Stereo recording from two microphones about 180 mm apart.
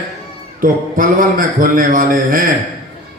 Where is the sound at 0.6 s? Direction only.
50° right (ahead or behind).